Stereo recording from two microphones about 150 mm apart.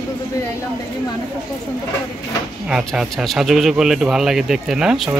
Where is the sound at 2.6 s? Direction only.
5° right (ahead or behind).